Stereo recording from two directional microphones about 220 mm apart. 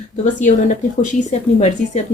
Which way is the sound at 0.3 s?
35° left (ahead or behind).